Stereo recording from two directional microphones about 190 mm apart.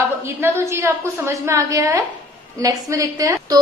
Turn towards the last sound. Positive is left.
turn(degrees=-15)  # may be behind; listen again after turning